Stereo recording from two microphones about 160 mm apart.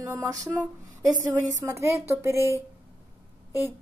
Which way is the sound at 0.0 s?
15° right (ahead or behind).